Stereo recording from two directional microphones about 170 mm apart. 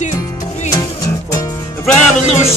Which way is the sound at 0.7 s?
20° left (ahead or behind).